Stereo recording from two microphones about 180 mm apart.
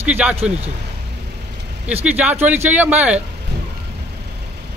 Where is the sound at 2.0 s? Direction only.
10° right (ahead or behind).